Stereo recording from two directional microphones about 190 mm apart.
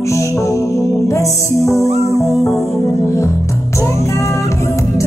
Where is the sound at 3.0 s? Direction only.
15° left (ahead or behind).